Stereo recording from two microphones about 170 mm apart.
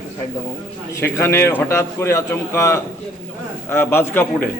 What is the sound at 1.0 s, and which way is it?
A man's voice, 15° left (ahead or behind).